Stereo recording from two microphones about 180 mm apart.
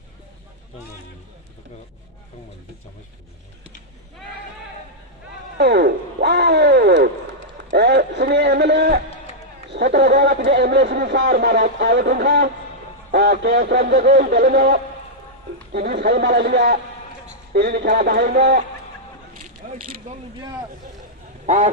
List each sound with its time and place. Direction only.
5.5 s a sound: 65° right (ahead or behind)
9.7 s a man's voice: 70° right (ahead or behind)
19.6 s mechanisms: 40° right (ahead or behind)
21.4 s duck: 40° right (ahead or behind)